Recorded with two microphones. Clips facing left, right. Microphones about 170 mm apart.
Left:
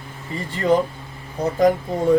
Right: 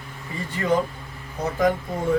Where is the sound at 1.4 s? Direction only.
35° left (ahead or behind).